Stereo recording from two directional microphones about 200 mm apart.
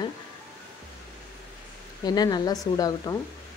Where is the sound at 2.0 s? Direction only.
20° left (ahead or behind).